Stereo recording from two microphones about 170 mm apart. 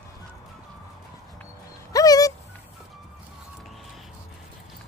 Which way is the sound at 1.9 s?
20° left (ahead or behind).